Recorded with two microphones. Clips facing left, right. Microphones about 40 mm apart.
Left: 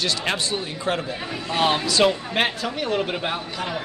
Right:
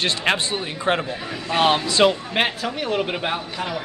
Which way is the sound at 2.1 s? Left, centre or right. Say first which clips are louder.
Right 1 dB; centre.